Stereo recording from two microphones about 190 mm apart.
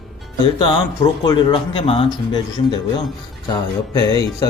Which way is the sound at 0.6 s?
25° left (ahead or behind).